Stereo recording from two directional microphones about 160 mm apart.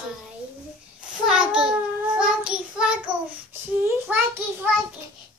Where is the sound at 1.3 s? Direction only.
5° right (ahead or behind).